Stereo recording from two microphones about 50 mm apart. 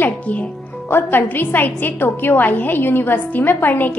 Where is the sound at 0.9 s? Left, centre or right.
Left.